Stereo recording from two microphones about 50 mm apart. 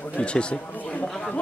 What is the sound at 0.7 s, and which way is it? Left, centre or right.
Speech, left.